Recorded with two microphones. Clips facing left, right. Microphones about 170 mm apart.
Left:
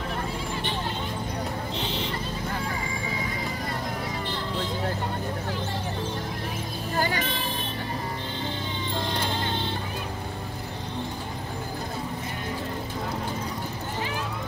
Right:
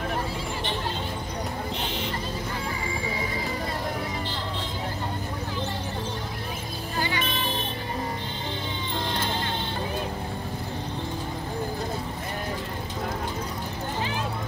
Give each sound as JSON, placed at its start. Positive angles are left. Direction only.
{"t": 7.0, "sound": "vehicle", "side_deg": 45}